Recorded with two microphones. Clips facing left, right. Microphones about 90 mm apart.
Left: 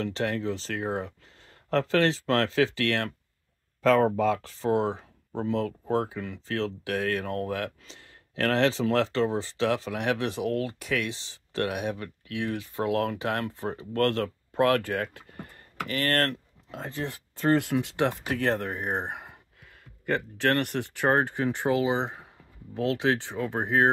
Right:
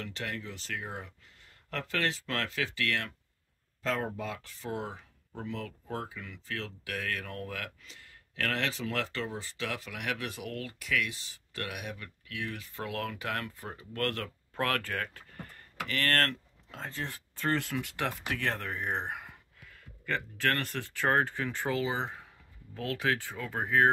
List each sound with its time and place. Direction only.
0.0 s speech: 35° left (ahead or behind)
3.8 s speech: 70° left (ahead or behind)
4.4 s speech: 35° left (ahead or behind)
14.5 s speech: 20° left (ahead or behind)